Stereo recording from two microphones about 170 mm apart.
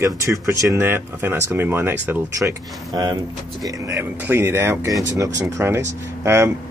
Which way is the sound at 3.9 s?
15° right (ahead or behind).